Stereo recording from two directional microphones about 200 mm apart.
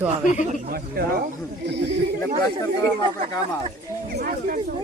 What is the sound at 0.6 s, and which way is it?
Speech, 50° right (ahead or behind).